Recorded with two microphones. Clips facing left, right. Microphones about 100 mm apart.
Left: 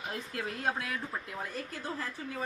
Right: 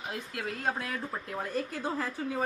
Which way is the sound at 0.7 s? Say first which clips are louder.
Right 1 dB; 30° right (ahead or behind).